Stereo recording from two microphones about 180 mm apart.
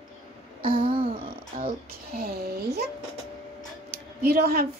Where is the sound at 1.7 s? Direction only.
55° right (ahead or behind).